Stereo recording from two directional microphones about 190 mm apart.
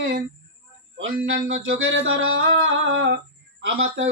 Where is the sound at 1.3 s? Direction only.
90° right.